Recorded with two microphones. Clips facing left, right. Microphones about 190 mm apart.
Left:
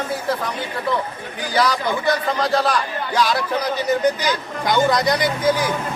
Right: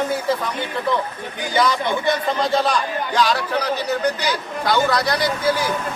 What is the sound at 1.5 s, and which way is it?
Speech, centre (ahead or behind).